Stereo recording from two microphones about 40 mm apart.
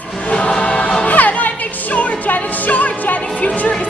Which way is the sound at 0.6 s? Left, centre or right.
Left.